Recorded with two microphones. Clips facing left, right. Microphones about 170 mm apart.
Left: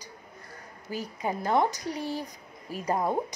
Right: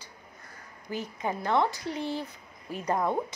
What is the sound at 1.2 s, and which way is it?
Speech, 40° left (ahead or behind).